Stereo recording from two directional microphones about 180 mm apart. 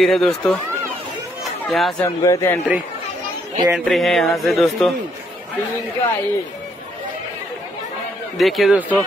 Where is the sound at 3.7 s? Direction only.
Centre (ahead or behind).